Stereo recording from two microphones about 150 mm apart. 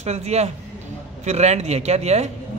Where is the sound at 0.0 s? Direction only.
45° right (ahead or behind).